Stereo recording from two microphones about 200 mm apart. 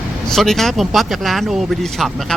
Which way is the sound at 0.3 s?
Centre (ahead or behind).